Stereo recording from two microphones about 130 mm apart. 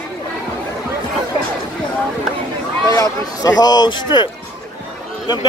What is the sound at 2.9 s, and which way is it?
Speech, 30° left (ahead or behind).